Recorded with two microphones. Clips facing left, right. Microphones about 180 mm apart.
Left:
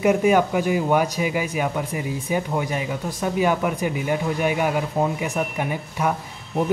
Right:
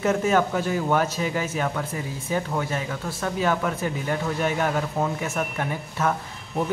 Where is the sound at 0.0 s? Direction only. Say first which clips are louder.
Left 4 dB; 15° left (ahead or behind).